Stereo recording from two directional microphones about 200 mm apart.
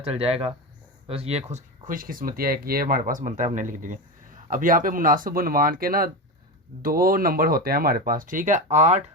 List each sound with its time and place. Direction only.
0.0 s speech: 30° right (ahead or behind)